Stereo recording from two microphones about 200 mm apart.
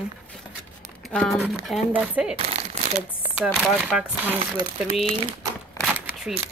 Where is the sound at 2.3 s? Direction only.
30° right (ahead or behind).